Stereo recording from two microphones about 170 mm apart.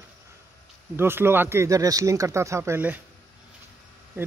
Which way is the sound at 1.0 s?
15° right (ahead or behind).